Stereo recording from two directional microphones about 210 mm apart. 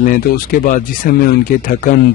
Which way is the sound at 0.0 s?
40° left (ahead or behind).